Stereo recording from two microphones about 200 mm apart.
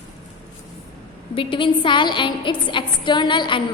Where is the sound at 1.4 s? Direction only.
25° left (ahead or behind).